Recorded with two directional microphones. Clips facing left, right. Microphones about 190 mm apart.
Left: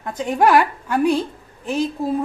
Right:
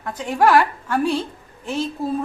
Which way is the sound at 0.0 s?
20° left (ahead or behind).